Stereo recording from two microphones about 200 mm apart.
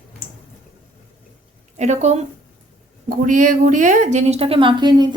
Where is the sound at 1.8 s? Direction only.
35° right (ahead or behind).